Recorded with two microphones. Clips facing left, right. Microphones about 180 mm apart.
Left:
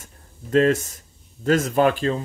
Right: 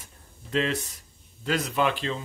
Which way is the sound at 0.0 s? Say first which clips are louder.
Left 6 dB; 45° left (ahead or behind).